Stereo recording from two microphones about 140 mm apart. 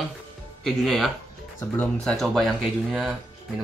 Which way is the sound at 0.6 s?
Centre (ahead or behind).